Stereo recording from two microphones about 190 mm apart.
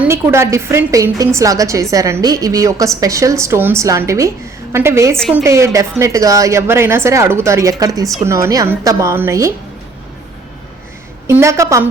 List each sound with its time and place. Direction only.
0.0 s a woman's voice: 15° right (ahead or behind)
11.3 s a woman's voice: 15° right (ahead or behind)